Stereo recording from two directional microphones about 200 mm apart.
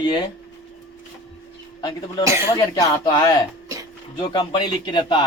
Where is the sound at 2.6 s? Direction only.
15° left (ahead or behind).